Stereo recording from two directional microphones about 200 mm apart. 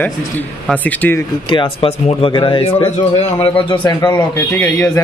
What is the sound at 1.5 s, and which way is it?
A man's voice, 25° left (ahead or behind).